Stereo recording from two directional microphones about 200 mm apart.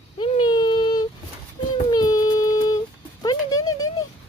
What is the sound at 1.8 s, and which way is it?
Child singing, 20° left (ahead or behind).